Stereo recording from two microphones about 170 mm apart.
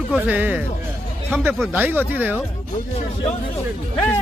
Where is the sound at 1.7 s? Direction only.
10° right (ahead or behind).